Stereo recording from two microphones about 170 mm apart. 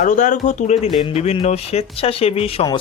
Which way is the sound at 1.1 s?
35° left (ahead or behind).